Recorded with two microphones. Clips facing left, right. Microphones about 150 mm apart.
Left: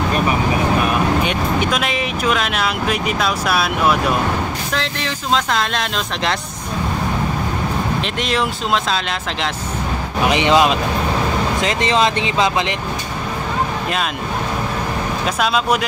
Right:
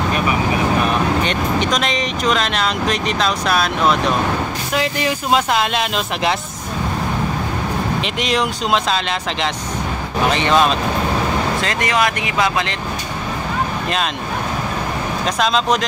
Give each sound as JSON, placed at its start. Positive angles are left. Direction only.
{"t": 1.2, "sound": "speech", "side_deg": 10}
{"t": 4.7, "sound": "speech", "side_deg": -10}
{"t": 8.0, "sound": "speech", "side_deg": 0}
{"t": 10.2, "sound": "speech", "side_deg": 15}
{"t": 15.2, "sound": "speech", "side_deg": 5}